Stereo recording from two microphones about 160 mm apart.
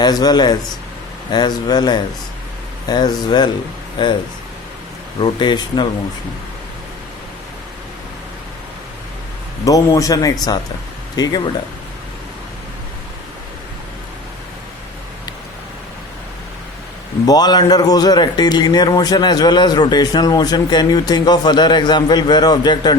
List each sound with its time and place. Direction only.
0.0 s a man's voice: 25° left (ahead or behind)
5.2 s a man's voice: 30° left (ahead or behind)
9.6 s a man's voice: 20° left (ahead or behind)
17.2 s a man's voice: 25° left (ahead or behind)